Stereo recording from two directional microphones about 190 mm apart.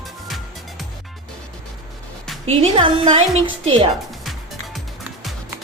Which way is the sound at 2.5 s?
30° right (ahead or behind).